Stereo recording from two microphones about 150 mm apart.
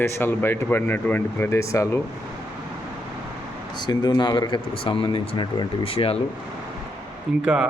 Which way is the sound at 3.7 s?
30° left (ahead or behind).